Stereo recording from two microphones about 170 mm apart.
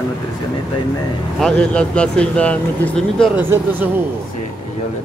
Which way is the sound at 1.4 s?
5° left (ahead or behind).